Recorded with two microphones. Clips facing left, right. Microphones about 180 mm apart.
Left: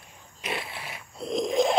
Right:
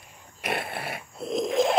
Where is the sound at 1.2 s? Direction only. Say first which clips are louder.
Even; centre (ahead or behind).